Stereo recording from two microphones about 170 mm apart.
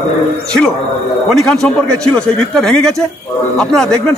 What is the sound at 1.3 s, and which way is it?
A man's voice, 5° left (ahead or behind).